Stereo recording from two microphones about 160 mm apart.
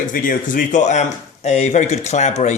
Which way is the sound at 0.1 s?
60° left (ahead or behind).